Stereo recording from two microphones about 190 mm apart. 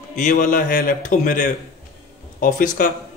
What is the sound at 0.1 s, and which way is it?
A man's voice, 40° left (ahead or behind).